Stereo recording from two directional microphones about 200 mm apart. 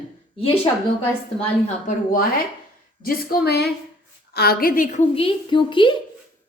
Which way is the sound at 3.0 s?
50° left (ahead or behind).